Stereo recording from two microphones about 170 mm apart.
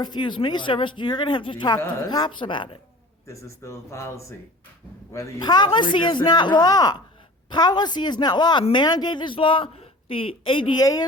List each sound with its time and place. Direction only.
0.0 s speech: 25° left (ahead or behind)
3.6 s speech: 15° left (ahead or behind)